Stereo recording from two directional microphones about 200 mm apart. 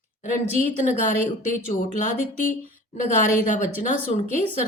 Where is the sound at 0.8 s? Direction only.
40° left (ahead or behind).